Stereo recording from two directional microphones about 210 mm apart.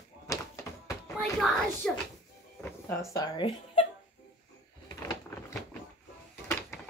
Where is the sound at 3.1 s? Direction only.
15° left (ahead or behind).